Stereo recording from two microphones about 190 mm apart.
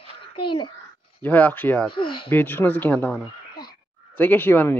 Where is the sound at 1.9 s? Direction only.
25° left (ahead or behind).